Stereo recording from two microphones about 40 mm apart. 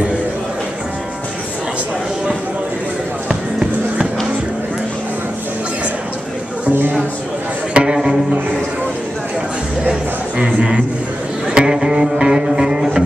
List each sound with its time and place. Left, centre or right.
3.3 s music: centre
7.7 s music: right
10.4 s a sound: right
11.5 s music: centre